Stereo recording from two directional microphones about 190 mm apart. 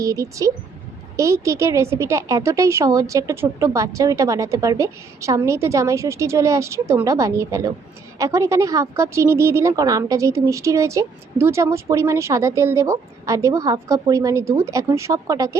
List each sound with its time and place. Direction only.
0.0 s a woman's voice: 15° right (ahead or behind)